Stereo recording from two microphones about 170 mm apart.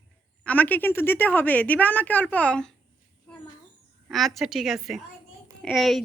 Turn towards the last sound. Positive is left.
turn(degrees=0)  # may be behind; listen again after turning